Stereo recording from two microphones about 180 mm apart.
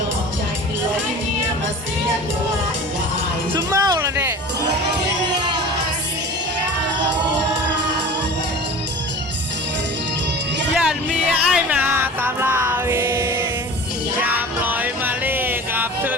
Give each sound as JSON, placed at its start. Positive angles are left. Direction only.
{"t": 3.5, "sound": "music", "side_deg": -20}
{"t": 10.8, "sound": "music", "side_deg": -5}